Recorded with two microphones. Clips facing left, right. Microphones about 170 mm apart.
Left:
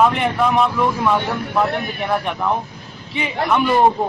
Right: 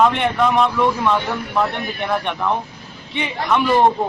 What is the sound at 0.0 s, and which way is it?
A man's voice, 5° left (ahead or behind).